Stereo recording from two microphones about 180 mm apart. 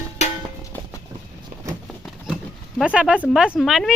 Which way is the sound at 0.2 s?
40° left (ahead or behind).